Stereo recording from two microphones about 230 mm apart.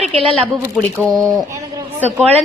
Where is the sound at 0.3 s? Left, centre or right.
Centre.